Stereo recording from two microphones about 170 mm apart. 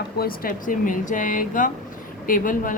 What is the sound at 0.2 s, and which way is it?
Speech, 55° left (ahead or behind).